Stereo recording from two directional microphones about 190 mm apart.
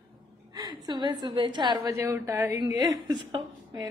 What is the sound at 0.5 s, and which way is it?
A woman's voice, 20° right (ahead or behind).